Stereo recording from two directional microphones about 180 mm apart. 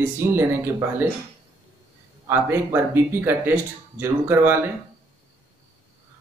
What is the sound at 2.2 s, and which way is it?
Speech, 15° right (ahead or behind).